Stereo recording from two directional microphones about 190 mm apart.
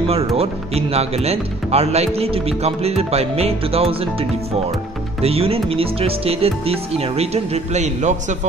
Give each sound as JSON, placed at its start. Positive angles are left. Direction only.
{"t": 0.1, "sound": "speech", "side_deg": -30}